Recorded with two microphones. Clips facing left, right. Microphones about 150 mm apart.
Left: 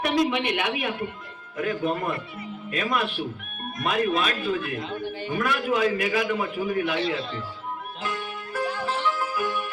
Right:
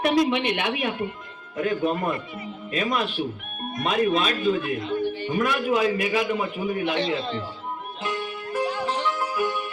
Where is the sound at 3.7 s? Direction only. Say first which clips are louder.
Right 2 dB; 25° right (ahead or behind).